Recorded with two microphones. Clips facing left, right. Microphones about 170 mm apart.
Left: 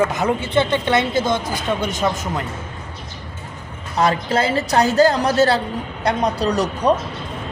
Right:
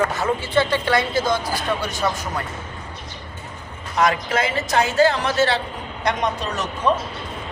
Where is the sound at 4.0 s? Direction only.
30° left (ahead or behind).